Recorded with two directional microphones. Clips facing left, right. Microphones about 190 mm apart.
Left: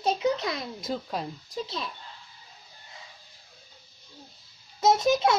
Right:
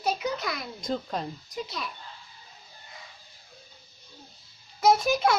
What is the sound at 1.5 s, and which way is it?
Speech, 25° left (ahead or behind).